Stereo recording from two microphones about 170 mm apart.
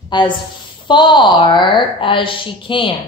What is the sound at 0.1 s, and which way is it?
A woman's voice, 25° left (ahead or behind).